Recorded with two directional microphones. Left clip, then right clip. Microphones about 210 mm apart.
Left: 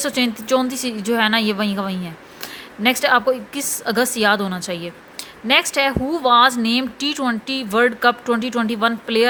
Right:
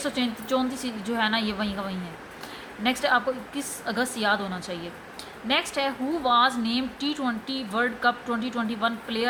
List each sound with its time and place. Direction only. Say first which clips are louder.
0.0 s a woman's voice: left 8 dB; 50° left (ahead or behind)